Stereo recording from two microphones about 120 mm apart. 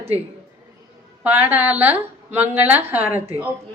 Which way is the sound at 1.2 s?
15° right (ahead or behind).